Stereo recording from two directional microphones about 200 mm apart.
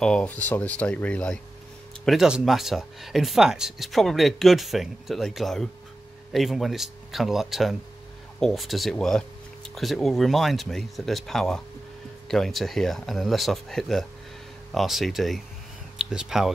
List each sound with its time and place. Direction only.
0.0 s speech: 5° left (ahead or behind)